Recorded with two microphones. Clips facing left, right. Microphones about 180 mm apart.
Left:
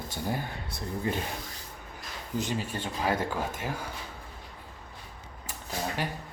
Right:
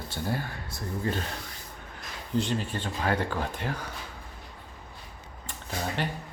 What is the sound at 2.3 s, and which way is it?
Speech, 10° left (ahead or behind).